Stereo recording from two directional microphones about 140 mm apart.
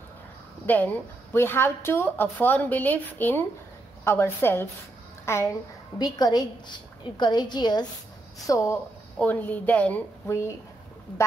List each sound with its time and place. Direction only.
0.7 s a woman's voice: 10° left (ahead or behind)
9.2 s speech: 10° left (ahead or behind)